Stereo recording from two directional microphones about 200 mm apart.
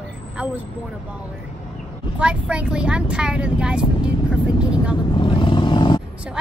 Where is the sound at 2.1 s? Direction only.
5° right (ahead or behind).